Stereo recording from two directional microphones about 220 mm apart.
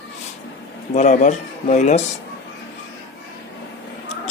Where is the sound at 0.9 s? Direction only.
35° left (ahead or behind).